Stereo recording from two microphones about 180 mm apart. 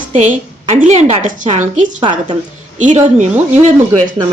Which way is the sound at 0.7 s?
40° right (ahead or behind).